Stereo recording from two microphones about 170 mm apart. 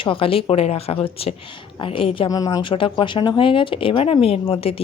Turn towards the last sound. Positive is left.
turn(degrees=35)  # may be behind; listen again after turning